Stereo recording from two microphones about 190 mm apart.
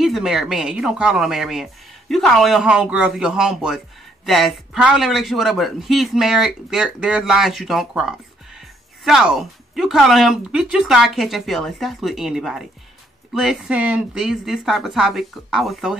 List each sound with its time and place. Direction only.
0.0 s speech: centre (ahead or behind)